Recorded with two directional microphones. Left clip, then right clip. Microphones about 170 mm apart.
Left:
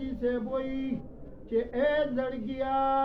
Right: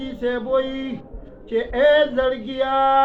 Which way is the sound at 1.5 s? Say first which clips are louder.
Right 11 dB; 20° right (ahead or behind).